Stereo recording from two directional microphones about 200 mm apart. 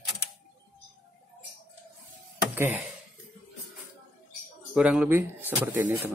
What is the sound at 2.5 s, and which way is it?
Speech, 10° right (ahead or behind).